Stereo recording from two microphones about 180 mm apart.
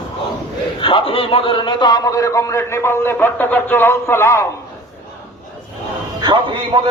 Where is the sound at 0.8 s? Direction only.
30° left (ahead or behind); by 4.4 s 15° left (ahead or behind).